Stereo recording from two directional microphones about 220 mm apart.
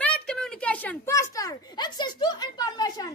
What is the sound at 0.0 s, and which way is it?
Speech, 5° left (ahead or behind).